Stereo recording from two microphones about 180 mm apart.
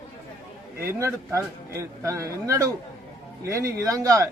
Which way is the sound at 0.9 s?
15° right (ahead or behind).